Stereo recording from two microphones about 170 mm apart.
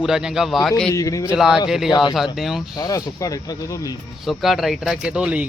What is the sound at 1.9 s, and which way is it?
Speech, 25° left (ahead or behind).